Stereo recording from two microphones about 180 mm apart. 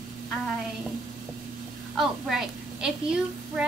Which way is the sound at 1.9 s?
Centre (ahead or behind).